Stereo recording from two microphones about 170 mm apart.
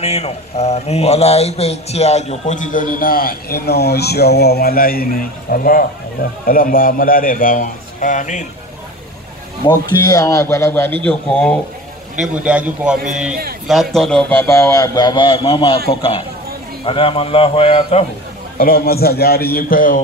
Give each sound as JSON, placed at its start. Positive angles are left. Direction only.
{"t": 0.0, "sound": "a man's voice", "side_deg": 40}
{"t": 9.8, "sound": "speech", "side_deg": 20}
{"t": 12.2, "sound": "a man's voice", "side_deg": -5}
{"t": 18.6, "sound": "a man's voice", "side_deg": 60}